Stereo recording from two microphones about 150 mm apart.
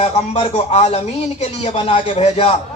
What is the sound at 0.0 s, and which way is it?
A man's voice, 50° left (ahead or behind).